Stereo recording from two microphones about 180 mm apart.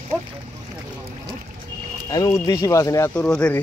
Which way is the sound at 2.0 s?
20° left (ahead or behind).